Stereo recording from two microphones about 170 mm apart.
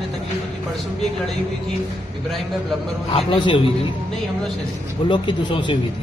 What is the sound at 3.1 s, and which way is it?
Speech, 35° left (ahead or behind).